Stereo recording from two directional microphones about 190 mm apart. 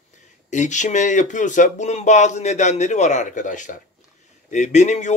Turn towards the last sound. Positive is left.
turn(degrees=40)  # may be behind; listen again after turning